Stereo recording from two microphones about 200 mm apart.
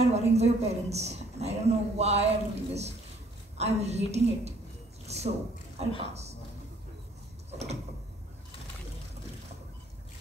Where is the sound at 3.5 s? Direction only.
35° right (ahead or behind).